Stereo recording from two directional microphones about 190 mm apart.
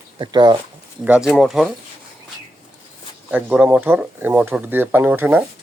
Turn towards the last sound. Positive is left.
turn(degrees=-10)  # may be behind; listen again after turning